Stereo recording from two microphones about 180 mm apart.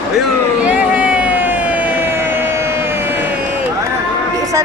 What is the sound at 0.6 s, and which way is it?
Emergency vehicle, 10° right (ahead or behind).